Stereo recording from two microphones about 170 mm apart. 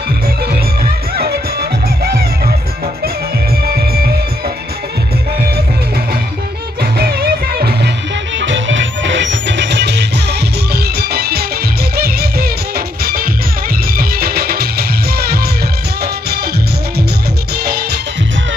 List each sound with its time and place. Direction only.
0.5 s music: 65° right (ahead or behind)
3.6 s music: 65° right (ahead or behind)
6.8 s music: 65° right (ahead or behind)
8.4 s music: 90° right
10.7 s music: 65° right (ahead or behind)